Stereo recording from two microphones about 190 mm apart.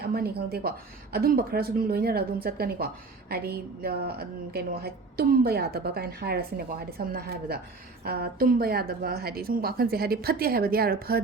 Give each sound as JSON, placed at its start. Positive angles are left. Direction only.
{"t": 0.1, "sound": "speech", "side_deg": -55}